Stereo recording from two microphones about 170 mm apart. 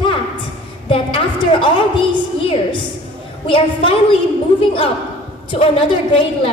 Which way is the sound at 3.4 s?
30° left (ahead or behind).